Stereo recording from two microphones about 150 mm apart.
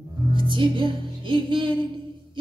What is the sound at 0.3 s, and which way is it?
Music, 35° right (ahead or behind).